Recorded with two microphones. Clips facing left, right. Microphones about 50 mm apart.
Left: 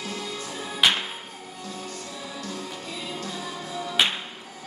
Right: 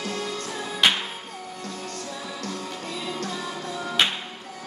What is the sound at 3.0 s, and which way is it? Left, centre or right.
Music, right.